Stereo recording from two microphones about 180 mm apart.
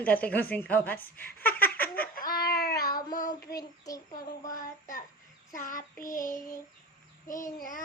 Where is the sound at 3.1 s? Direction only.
50° left (ahead or behind).